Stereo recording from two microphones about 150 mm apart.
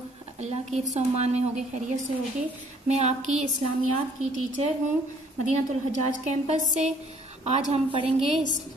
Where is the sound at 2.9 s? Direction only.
50° right (ahead or behind).